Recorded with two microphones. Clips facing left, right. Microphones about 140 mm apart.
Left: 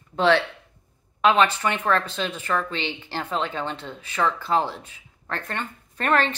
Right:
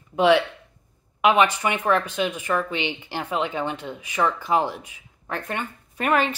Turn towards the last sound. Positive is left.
turn(degrees=-10)  # may be behind; listen again after turning